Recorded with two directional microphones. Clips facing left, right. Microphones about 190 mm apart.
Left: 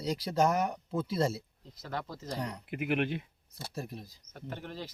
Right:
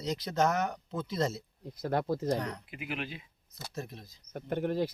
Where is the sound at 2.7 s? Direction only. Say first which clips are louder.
Left 8 dB; 60° left (ahead or behind).